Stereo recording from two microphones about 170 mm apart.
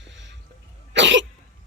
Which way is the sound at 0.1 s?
90° right.